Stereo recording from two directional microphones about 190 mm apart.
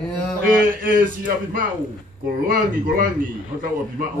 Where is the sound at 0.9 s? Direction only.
45° right (ahead or behind).